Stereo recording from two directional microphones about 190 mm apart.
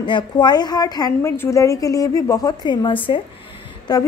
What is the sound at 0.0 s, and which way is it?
A woman's voice, 25° left (ahead or behind).